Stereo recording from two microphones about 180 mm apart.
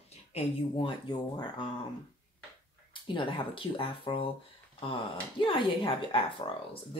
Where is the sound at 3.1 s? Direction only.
30° left (ahead or behind).